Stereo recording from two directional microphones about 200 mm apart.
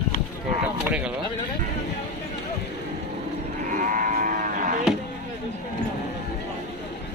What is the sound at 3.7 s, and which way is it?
Cattle, 45° right (ahead or behind).